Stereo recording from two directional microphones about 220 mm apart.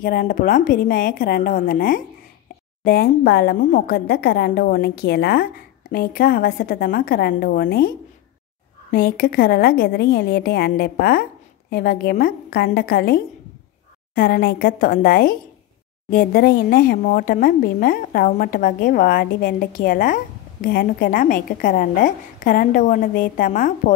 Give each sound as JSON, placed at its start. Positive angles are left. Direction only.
{"t": 0.0, "sound": "a woman's voice", "side_deg": 40}
{"t": 8.9, "sound": "a woman's voice", "side_deg": 40}